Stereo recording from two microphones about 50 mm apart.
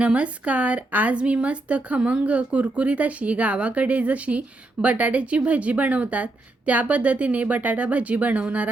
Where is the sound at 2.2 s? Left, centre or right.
Right.